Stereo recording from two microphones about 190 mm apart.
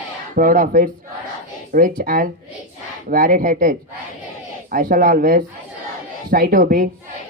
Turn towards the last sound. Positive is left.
turn(degrees=-50)  # may be behind; listen again after turning